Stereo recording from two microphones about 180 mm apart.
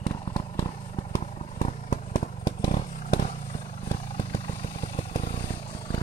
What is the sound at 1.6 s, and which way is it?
Vehicle, 40° left (ahead or behind).